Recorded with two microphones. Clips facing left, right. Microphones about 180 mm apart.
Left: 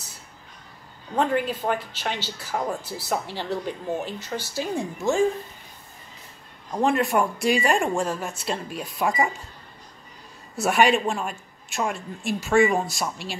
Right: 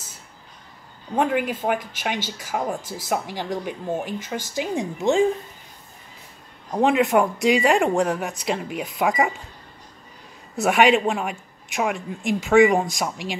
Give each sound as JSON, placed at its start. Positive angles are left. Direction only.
{"t": 1.1, "sound": "a man's voice", "side_deg": -10}
{"t": 6.7, "sound": "speech", "side_deg": -20}
{"t": 10.5, "sound": "a man's voice", "side_deg": -20}